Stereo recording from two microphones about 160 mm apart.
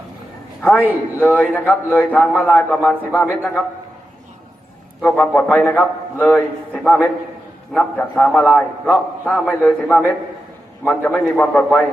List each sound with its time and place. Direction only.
0.6 s a man's voice: 10° left (ahead or behind)
5.0 s a man's voice: 10° left (ahead or behind)
7.7 s a man's voice: 10° left (ahead or behind)